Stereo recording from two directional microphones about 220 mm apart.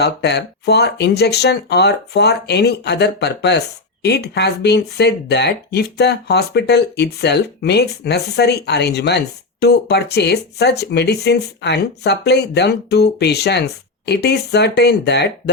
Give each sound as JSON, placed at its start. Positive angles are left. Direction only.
{"t": 0.0, "sound": "speech", "side_deg": 50}